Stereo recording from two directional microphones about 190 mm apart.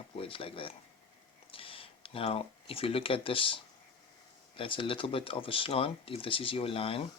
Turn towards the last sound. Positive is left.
turn(degrees=30)  # may be behind; listen again after turning